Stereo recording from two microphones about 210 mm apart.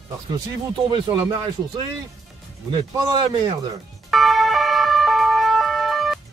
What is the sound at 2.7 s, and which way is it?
A man's voice, 20° right (ahead or behind).